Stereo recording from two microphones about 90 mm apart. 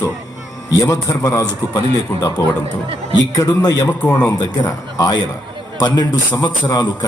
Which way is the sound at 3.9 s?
20° left (ahead or behind).